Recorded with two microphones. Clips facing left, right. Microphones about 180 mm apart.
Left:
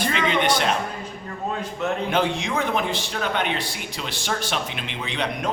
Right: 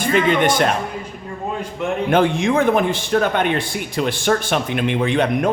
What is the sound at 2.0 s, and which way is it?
Speech, 55° right (ahead or behind).